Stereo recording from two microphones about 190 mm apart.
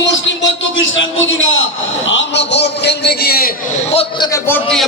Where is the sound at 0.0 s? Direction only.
75° left (ahead or behind); by 1.5 s 90° left.